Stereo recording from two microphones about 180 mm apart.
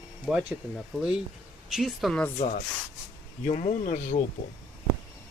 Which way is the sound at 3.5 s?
40° left (ahead or behind).